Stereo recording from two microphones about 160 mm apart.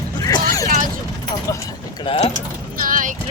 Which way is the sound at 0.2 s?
25° left (ahead or behind).